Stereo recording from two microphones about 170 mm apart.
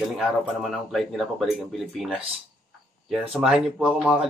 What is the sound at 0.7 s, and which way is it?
Speech, centre (ahead or behind).